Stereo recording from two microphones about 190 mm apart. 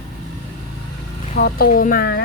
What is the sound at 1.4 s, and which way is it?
Speech, 55° left (ahead or behind).